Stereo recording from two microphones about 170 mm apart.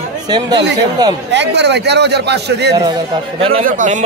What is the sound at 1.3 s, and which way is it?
A man's voice, 90° right.